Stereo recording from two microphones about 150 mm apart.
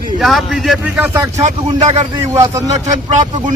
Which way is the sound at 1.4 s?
50° right (ahead or behind).